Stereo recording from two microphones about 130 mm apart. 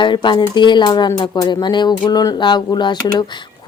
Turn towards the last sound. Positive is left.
turn(degrees=35)  # may be behind; listen again after turning